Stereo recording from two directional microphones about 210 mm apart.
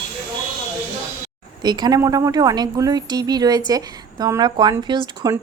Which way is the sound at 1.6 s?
20° right (ahead or behind).